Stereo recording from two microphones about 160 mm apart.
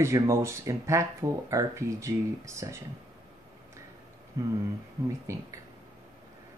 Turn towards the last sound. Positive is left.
turn(degrees=-20)  # may be behind; listen again after turning